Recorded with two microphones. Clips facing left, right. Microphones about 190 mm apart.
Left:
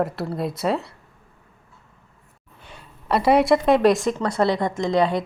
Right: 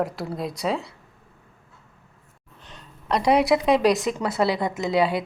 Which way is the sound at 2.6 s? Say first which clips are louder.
Left 1 dB; 10° left (ahead or behind).